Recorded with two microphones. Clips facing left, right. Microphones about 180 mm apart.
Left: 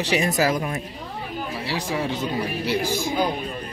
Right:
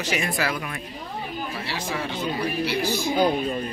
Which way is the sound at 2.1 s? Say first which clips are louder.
Even; 45° left (ahead or behind).